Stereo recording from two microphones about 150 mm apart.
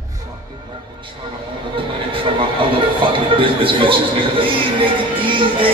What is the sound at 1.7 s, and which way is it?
Music, 35° right (ahead or behind).